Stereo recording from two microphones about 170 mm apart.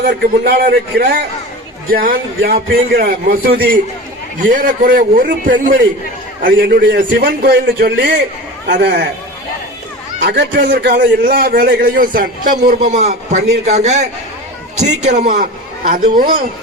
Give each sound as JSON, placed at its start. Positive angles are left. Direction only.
{"t": 0.0, "sound": "a man's voice", "side_deg": -65}
{"t": 4.4, "sound": "a man's voice", "side_deg": -50}
{"t": 10.2, "sound": "a man's voice", "side_deg": -85}